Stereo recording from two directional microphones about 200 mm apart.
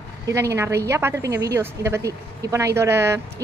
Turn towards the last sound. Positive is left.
turn(degrees=-15)  # may be behind; listen again after turning